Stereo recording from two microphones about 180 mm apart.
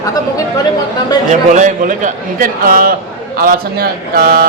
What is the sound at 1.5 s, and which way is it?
A man's voice, 45° right (ahead or behind).